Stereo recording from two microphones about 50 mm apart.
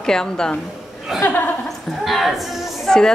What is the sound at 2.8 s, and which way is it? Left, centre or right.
Speech, centre.